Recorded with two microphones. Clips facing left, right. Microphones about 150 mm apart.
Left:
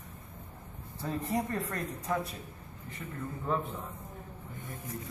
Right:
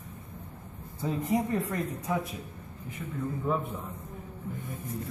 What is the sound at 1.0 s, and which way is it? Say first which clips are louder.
Speech: right 4 dB; 10° right (ahead or behind).